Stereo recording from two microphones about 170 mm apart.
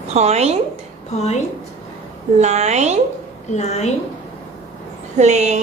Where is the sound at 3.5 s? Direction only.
40° left (ahead or behind).